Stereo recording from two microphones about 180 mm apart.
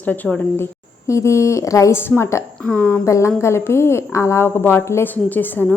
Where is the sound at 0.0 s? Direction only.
10° left (ahead or behind).